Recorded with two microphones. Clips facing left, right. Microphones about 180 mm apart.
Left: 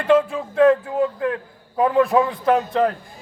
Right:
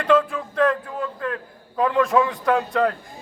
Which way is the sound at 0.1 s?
25° left (ahead or behind).